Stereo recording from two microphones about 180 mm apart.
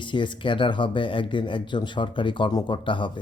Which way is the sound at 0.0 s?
25° left (ahead or behind).